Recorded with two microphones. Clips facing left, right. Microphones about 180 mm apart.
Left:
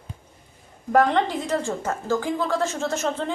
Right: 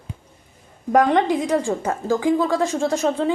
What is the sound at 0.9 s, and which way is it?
A woman's voice, 15° right (ahead or behind).